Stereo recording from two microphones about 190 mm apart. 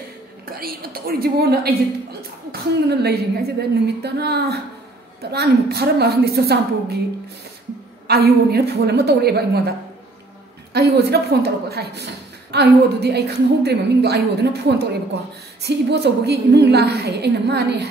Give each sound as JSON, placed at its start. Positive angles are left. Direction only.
{"t": 0.6, "sound": "a woman's voice", "side_deg": -50}
{"t": 8.1, "sound": "a woman's voice", "side_deg": -55}